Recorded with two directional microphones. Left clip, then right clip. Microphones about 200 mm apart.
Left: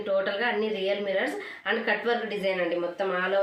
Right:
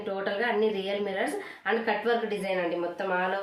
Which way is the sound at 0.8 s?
15° right (ahead or behind).